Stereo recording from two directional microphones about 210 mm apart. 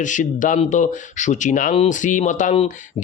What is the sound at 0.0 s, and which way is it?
Speech, 35° left (ahead or behind).